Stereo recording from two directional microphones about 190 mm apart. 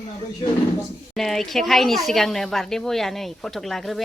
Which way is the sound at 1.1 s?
Centre (ahead or behind).